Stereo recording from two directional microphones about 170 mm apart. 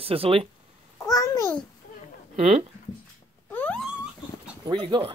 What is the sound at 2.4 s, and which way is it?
Speech, 40° right (ahead or behind).